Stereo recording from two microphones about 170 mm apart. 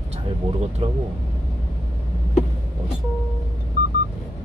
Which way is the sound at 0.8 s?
35° right (ahead or behind).